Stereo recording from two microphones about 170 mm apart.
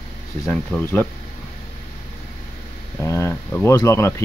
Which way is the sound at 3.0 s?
15° left (ahead or behind).